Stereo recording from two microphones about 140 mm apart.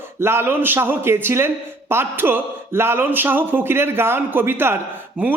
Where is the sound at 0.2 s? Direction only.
15° right (ahead or behind).